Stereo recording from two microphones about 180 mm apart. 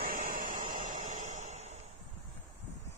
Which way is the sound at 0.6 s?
40° right (ahead or behind).